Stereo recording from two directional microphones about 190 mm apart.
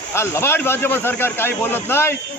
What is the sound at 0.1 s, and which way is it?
Speech, 15° left (ahead or behind).